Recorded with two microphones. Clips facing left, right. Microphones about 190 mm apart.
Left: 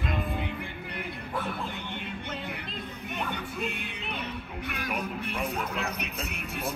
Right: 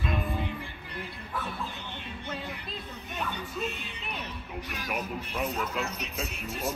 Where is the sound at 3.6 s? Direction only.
60° left (ahead or behind).